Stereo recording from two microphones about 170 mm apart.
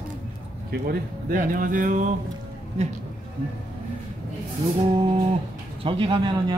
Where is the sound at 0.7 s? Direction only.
60° right (ahead or behind).